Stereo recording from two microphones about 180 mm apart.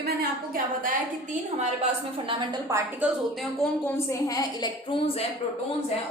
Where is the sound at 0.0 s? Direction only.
55° right (ahead or behind).